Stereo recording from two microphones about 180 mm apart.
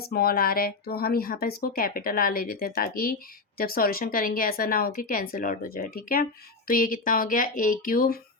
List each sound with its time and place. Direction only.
0.0 s speech: 60° left (ahead or behind)